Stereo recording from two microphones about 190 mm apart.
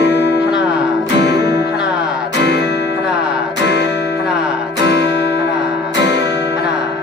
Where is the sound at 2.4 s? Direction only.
65° left (ahead or behind).